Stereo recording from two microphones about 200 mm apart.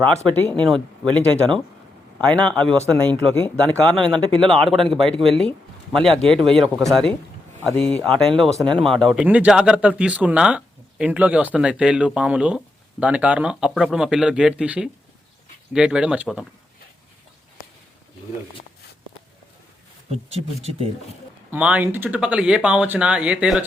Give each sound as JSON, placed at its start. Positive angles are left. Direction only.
{"t": 0.3, "sound": "speech", "side_deg": 5}
{"t": 20.1, "sound": "speech", "side_deg": -30}
{"t": 21.5, "sound": "speech", "side_deg": -5}